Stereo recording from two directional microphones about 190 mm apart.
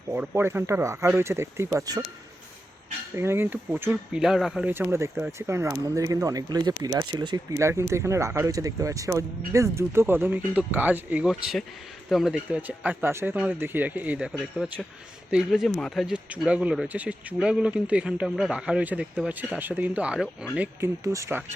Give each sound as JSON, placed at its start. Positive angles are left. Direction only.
{"t": 0.1, "sound": "speech", "side_deg": -10}
{"t": 3.2, "sound": "speech", "side_deg": -10}